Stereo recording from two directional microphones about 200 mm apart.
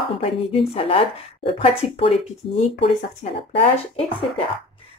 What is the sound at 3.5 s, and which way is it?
Speech, 30° left (ahead or behind).